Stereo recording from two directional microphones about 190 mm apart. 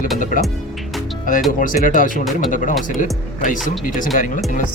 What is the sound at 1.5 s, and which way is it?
Speech, 45° left (ahead or behind).